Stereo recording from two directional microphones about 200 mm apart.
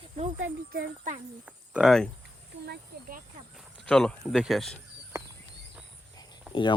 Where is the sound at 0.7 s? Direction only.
45° right (ahead or behind).